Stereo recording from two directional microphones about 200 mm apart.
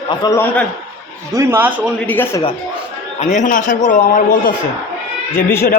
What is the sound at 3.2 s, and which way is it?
A man's voice, 35° left (ahead or behind).